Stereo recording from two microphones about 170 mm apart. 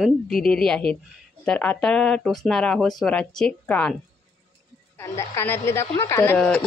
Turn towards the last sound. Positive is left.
turn(degrees=5)  # may be behind; listen again after turning